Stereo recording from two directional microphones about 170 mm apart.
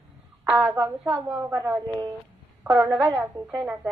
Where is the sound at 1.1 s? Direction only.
Centre (ahead or behind).